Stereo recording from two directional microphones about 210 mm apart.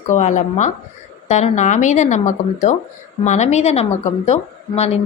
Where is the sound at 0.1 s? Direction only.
35° left (ahead or behind).